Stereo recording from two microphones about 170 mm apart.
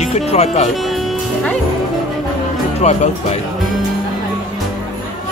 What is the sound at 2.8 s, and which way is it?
Speech, 40° left (ahead or behind).